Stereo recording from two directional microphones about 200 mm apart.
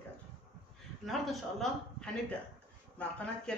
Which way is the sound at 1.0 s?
Centre (ahead or behind).